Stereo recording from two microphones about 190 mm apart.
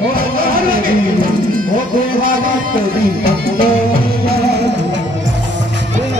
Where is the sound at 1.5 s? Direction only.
50° right (ahead or behind).